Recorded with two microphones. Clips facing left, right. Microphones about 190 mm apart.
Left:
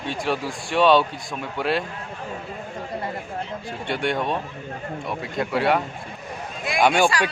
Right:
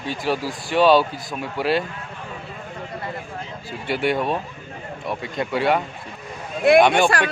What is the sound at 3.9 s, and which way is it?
Speech, 5° right (ahead or behind).